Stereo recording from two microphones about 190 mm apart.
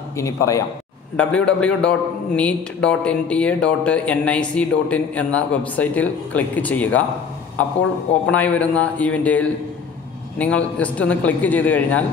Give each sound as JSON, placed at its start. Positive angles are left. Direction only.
{"t": 0.2, "sound": "a man's voice", "side_deg": 15}
{"t": 8.3, "sound": "a man's voice", "side_deg": 5}